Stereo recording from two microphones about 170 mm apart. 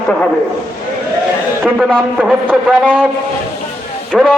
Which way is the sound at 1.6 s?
Centre (ahead or behind).